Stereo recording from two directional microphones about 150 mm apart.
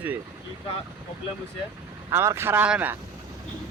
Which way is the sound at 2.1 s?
15° right (ahead or behind).